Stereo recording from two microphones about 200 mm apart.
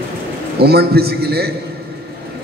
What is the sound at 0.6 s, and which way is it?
Speech, 50° right (ahead or behind).